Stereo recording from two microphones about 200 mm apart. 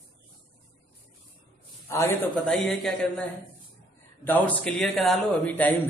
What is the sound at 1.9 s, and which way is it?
Speech, 15° left (ahead or behind).